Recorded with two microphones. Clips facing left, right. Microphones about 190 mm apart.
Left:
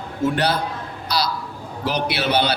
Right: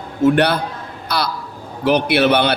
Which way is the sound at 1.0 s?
55° right (ahead or behind).